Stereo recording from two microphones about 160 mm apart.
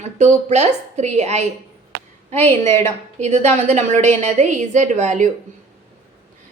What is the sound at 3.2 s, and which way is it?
A woman's voice, 45° right (ahead or behind).